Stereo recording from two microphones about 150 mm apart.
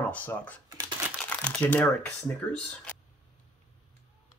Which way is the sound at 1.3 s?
10° left (ahead or behind).